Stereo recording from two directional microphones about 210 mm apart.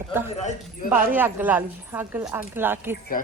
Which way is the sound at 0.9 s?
10° right (ahead or behind).